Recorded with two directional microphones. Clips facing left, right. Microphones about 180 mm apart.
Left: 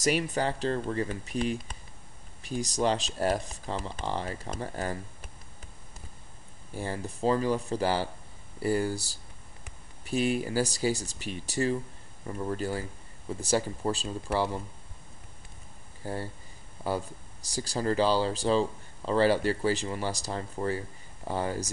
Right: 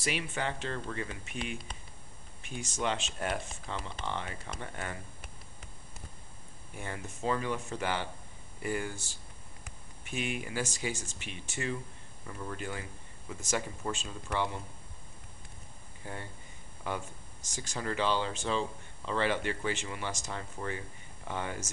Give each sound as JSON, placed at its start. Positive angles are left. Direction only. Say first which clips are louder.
{"t": 0.0, "sound": "speech", "louder": "left 7 dB", "side_deg": 40}
{"t": 6.7, "sound": "speech", "louder": "left 7 dB", "side_deg": 35}
{"t": 16.0, "sound": "speech", "louder": "left 8 dB", "side_deg": 35}